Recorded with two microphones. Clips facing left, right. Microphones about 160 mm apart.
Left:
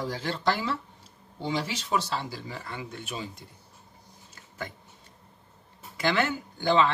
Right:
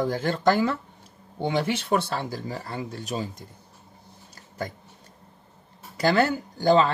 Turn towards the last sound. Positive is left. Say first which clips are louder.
# right 4 dB
turn(degrees=-40)  # may be behind; listen again after turning